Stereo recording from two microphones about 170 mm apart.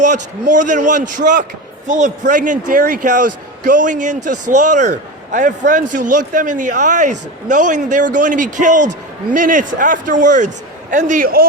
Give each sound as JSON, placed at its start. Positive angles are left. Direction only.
{"t": 0.0, "sound": "a man's voice", "side_deg": -45}